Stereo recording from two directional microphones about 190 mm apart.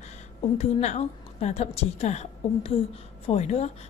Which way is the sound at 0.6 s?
35° left (ahead or behind).